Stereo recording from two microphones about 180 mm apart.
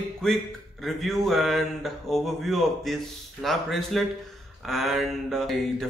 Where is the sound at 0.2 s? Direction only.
Centre (ahead or behind).